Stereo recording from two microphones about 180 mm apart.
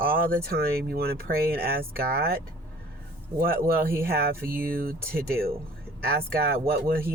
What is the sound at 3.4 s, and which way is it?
Speech, 55° right (ahead or behind).